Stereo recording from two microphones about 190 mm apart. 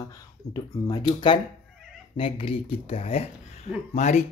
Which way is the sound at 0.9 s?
25° left (ahead or behind).